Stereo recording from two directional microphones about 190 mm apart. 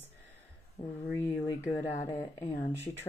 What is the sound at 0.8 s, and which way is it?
Speech, 20° left (ahead or behind).